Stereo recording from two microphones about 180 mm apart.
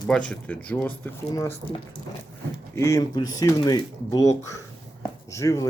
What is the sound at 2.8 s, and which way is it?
Speech, 15° left (ahead or behind).